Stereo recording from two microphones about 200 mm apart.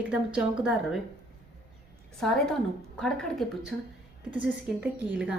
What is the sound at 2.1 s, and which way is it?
A woman's voice, centre (ahead or behind).